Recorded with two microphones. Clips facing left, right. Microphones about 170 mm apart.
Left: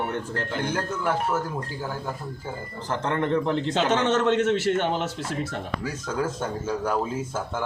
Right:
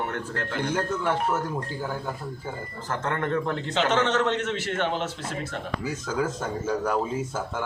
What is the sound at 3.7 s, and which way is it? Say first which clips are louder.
Speech: right 1 dB; 45° left (ahead or behind).